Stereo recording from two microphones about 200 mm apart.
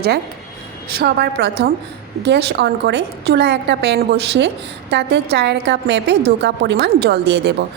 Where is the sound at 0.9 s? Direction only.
55° right (ahead or behind).